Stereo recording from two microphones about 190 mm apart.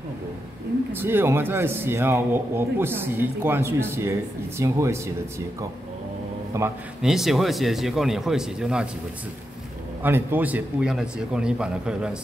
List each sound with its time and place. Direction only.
0.9 s a man's voice: 10° right (ahead or behind)
6.5 s a man's voice: 15° right (ahead or behind)
7.0 s a man's voice: centre (ahead or behind)
10.0 s a man's voice: 10° right (ahead or behind)